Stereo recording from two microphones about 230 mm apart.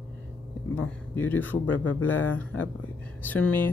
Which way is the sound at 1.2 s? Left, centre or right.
Centre.